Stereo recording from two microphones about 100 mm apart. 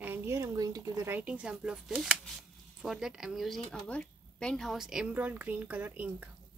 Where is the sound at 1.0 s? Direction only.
15° right (ahead or behind); by 3.8 s centre (ahead or behind).